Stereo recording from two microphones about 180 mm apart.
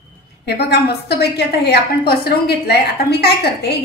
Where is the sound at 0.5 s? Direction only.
65° left (ahead or behind).